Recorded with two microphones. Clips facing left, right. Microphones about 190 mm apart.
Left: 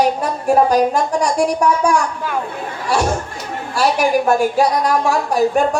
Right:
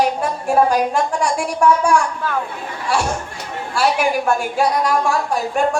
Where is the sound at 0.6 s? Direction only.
40° left (ahead or behind).